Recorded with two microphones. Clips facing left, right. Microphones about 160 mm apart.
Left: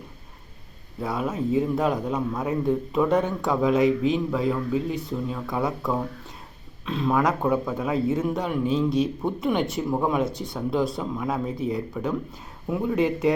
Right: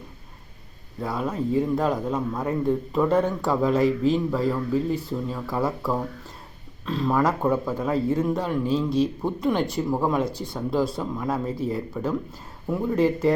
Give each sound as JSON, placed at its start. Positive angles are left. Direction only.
{"t": 1.0, "sound": "a man's voice", "side_deg": 0}